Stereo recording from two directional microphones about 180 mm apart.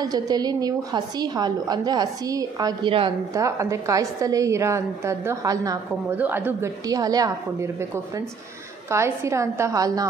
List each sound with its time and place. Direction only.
0.0 s a woman's voice: 20° right (ahead or behind)
3.3 s a woman's voice: 15° right (ahead or behind)